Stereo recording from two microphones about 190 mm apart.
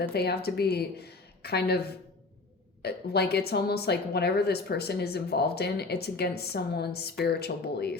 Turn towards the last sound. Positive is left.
turn(degrees=60)  # may be behind; listen again after turning